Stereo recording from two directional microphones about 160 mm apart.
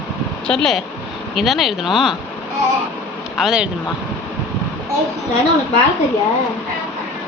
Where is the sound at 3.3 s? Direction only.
5° right (ahead or behind).